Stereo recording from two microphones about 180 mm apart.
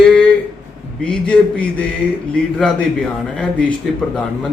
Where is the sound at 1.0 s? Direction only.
5° left (ahead or behind).